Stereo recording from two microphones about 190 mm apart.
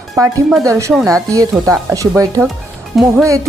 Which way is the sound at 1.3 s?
15° right (ahead or behind).